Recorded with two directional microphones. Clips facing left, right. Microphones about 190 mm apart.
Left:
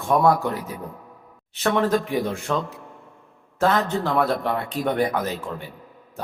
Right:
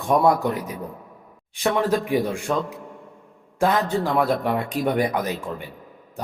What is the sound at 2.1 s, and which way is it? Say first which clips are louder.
A man's voice: right 2 dB; 15° right (ahead or behind).